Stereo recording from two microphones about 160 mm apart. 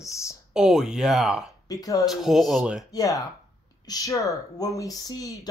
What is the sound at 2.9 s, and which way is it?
Speech, 20° left (ahead or behind).